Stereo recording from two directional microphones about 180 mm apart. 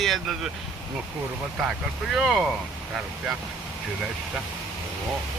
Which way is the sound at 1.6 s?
5° right (ahead or behind).